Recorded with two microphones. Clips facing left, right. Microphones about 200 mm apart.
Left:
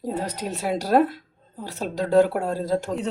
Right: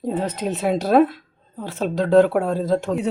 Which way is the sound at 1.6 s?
60° right (ahead or behind).